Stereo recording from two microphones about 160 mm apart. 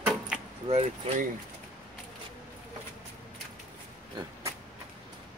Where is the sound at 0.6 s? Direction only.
45° right (ahead or behind).